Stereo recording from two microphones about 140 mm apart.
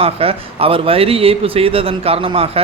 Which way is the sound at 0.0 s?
45° right (ahead or behind).